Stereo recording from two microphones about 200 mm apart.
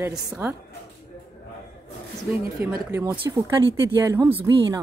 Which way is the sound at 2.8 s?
10° right (ahead or behind).